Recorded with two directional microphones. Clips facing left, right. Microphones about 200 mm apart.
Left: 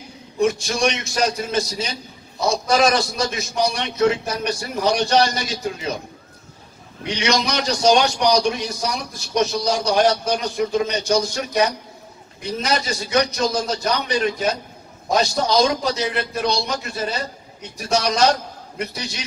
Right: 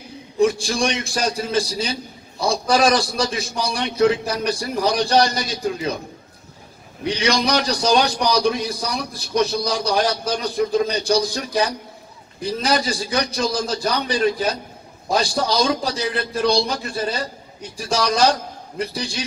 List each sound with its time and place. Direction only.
0.4 s a man's voice: 30° right (ahead or behind)
7.1 s a man's voice: 30° right (ahead or behind)